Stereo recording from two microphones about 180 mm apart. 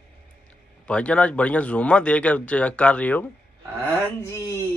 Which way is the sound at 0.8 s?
5° left (ahead or behind).